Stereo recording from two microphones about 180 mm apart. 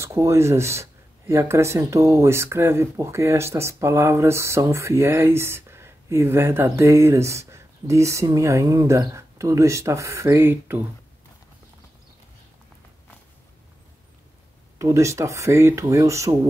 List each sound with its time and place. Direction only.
0.0 s speech: 15° right (ahead or behind)
14.8 s speech: 15° right (ahead or behind)